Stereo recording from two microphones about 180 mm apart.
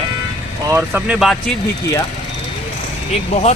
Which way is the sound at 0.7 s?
10° right (ahead or behind).